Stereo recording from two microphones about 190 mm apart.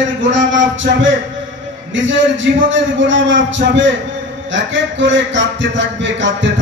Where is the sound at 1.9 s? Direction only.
75° right (ahead or behind).